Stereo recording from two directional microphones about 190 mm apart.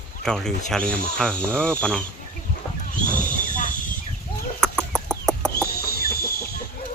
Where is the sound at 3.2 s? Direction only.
45° left (ahead or behind).